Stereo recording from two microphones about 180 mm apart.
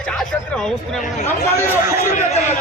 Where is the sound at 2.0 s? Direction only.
40° left (ahead or behind).